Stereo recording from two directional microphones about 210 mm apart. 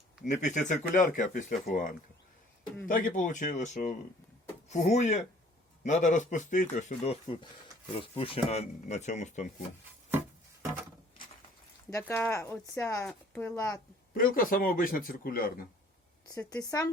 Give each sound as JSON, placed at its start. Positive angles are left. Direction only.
{"t": 0.3, "sound": "speech", "side_deg": 35}
{"t": 11.9, "sound": "speech", "side_deg": 10}
{"t": 14.1, "sound": "a man's voice", "side_deg": 45}
{"t": 16.3, "sound": "speech", "side_deg": 15}